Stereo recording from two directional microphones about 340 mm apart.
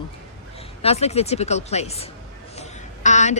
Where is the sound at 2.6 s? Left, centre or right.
Left.